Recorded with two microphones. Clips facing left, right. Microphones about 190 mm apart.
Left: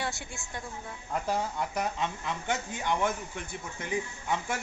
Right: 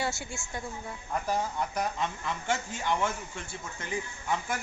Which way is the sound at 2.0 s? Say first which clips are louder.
Even; 15° left (ahead or behind).